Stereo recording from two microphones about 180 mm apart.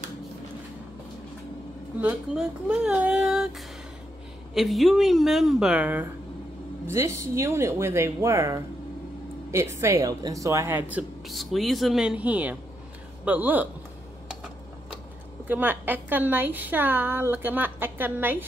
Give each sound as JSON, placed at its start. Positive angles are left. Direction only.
{"t": 2.0, "sound": "speech", "side_deg": -5}
{"t": 4.6, "sound": "a woman's voice", "side_deg": 0}
{"t": 15.4, "sound": "speech", "side_deg": -10}